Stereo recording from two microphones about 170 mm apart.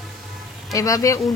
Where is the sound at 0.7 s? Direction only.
20° left (ahead or behind).